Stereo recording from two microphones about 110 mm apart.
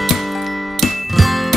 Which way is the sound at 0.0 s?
Centre (ahead or behind).